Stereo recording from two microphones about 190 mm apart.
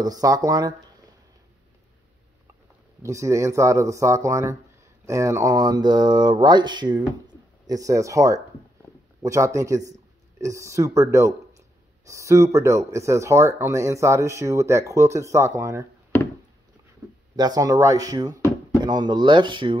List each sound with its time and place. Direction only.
0.0 s speech: 20° right (ahead or behind)
3.0 s speech: 15° right (ahead or behind)
17.0 s a sound: 20° right (ahead or behind)
17.4 s speech: 20° right (ahead or behind)